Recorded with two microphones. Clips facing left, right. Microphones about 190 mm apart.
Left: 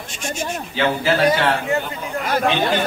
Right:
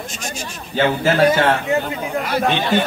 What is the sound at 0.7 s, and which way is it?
Speech, 45° right (ahead or behind).